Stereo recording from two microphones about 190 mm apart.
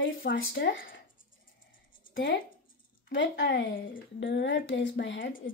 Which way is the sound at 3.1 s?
75° left (ahead or behind).